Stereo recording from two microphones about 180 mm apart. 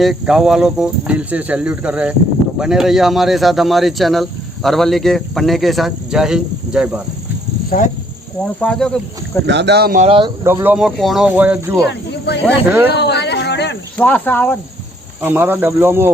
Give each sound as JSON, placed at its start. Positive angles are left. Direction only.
{"t": 0.0, "sound": "speech", "side_deg": 0}
{"t": 7.8, "sound": "speech", "side_deg": 45}
{"t": 8.6, "sound": "speech", "side_deg": 5}
{"t": 9.5, "sound": "speech", "side_deg": -70}
{"t": 10.0, "sound": "speech", "side_deg": -30}
{"t": 10.4, "sound": "speech", "side_deg": -10}
{"t": 11.9, "sound": "speech", "side_deg": 70}
{"t": 12.6, "sound": "speech", "side_deg": -10}
{"t": 12.9, "sound": "a sound", "side_deg": 70}
{"t": 13.9, "sound": "speech", "side_deg": 10}
{"t": 15.2, "sound": "speech", "side_deg": -10}